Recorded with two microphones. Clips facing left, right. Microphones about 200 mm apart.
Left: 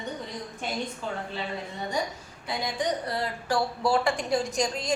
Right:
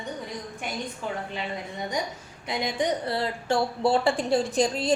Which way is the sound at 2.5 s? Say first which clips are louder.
Right 2 dB; 20° right (ahead or behind).